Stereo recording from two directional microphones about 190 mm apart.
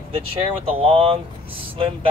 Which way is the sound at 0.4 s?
30° right (ahead or behind).